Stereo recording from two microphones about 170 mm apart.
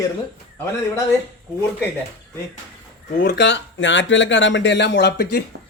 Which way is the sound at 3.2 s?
90° left.